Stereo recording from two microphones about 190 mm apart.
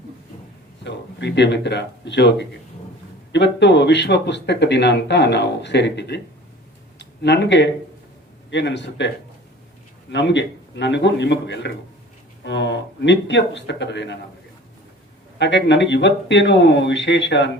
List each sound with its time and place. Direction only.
0.9 s speech: 65° left (ahead or behind)
15.4 s speech: 65° left (ahead or behind)